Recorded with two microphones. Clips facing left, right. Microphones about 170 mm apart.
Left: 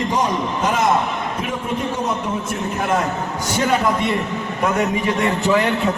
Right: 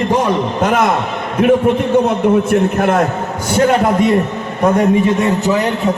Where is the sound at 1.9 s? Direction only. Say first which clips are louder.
Right 11 dB; 60° right (ahead or behind).